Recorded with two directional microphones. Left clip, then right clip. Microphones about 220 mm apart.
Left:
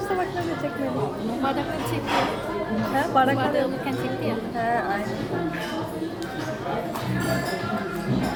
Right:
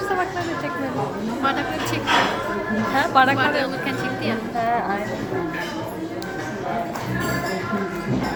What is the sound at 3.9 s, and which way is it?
Music, 40° left (ahead or behind).